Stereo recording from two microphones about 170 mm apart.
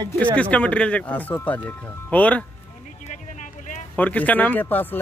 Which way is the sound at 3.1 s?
45° left (ahead or behind).